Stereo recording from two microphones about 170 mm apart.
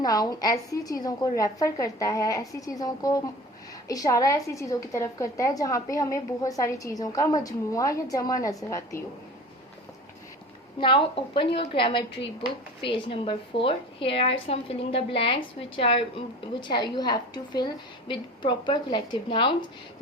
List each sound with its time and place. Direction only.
0.0 s a woman's voice: 20° left (ahead or behind)
10.8 s a woman's voice: 30° left (ahead or behind)